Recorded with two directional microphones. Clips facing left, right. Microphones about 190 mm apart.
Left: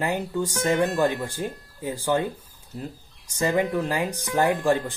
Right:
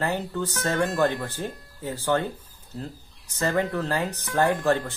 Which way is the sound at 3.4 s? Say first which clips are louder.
Left 2 dB; 15° left (ahead or behind).